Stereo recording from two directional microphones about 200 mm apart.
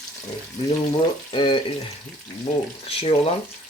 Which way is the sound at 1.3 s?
25° left (ahead or behind).